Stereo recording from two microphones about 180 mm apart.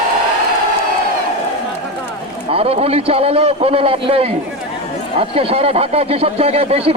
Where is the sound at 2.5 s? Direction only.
35° right (ahead or behind).